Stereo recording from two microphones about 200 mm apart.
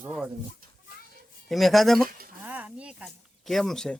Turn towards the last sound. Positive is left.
turn(degrees=5)  # may be behind; listen again after turning